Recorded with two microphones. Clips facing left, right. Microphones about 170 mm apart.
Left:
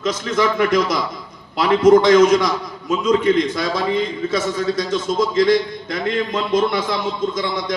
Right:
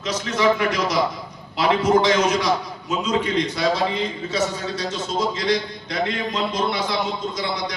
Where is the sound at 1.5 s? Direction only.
50° left (ahead or behind).